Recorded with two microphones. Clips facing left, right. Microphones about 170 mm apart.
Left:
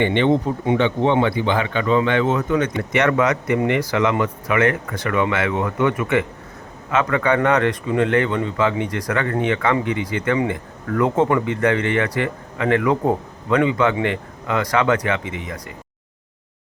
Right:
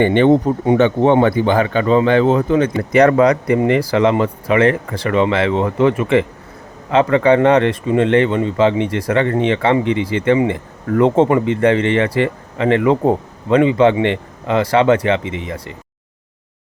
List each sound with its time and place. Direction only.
0.0 s speech: 45° right (ahead or behind); by 15.7 s 25° right (ahead or behind)